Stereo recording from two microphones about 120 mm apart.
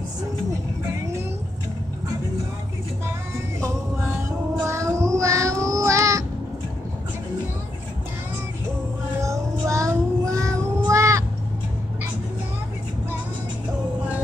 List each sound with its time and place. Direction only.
4.6 s child singing: 25° right (ahead or behind)
9.2 s child singing: 25° right (ahead or behind)